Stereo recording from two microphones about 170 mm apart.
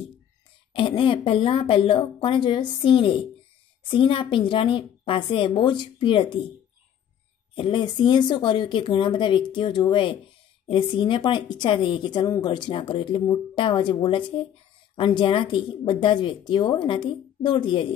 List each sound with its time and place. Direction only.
0.7 s a woman's voice: 30° left (ahead or behind)
7.5 s a woman's voice: 30° left (ahead or behind)